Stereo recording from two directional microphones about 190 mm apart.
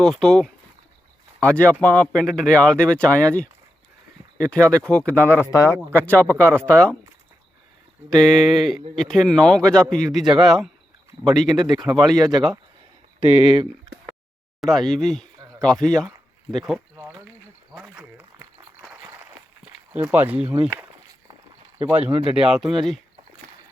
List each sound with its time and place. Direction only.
0.0 s speech: centre (ahead or behind)
6.2 s speech: 10° right (ahead or behind)
6.6 s speech: 5° left (ahead or behind)
8.1 s speech: 5° left (ahead or behind)
13.1 s speech: 30° right (ahead or behind)
14.6 s speech: centre (ahead or behind)
17.7 s a sound: 5° right (ahead or behind)
19.0 s a sound: 15° right (ahead or behind)
19.9 s speech: 10° right (ahead or behind)